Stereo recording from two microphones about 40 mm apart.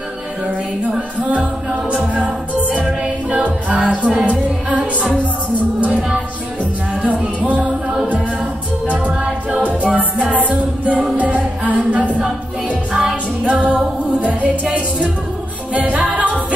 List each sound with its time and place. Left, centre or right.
1.3 s music: right
6.9 s music: right
8.8 s music: right
10.3 s a capella: right
12.2 s music: right
13.4 s a capella: right
14.2 s music: right